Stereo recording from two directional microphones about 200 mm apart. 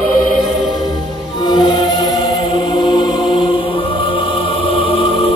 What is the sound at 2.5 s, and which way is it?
Mantra, 25° left (ahead or behind).